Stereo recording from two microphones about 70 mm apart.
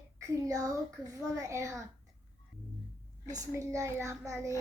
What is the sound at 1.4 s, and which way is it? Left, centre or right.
Child singing, right.